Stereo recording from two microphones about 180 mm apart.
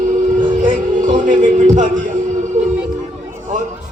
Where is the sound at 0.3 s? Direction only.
45° right (ahead or behind).